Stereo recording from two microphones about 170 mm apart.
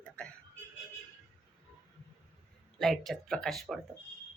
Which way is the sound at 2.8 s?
Centre (ahead or behind).